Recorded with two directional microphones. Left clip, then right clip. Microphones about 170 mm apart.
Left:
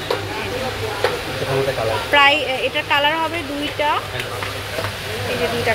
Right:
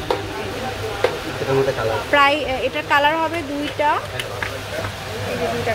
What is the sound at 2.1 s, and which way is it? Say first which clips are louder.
Speech: left 2 dB; 20° right (ahead or behind).